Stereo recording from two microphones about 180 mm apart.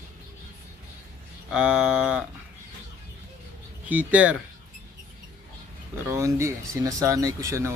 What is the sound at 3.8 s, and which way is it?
Speech, 10° right (ahead or behind).